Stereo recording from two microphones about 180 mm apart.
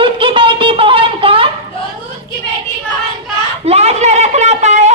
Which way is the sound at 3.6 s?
35° right (ahead or behind).